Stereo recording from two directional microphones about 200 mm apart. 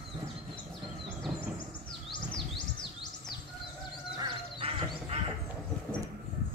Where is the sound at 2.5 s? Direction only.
25° left (ahead or behind).